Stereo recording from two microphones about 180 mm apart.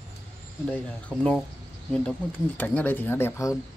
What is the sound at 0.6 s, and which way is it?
Speech, 5° left (ahead or behind).